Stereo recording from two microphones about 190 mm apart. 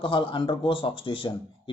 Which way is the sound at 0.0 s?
25° left (ahead or behind).